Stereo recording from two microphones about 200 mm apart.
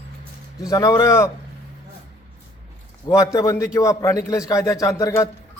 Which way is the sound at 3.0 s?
15° left (ahead or behind).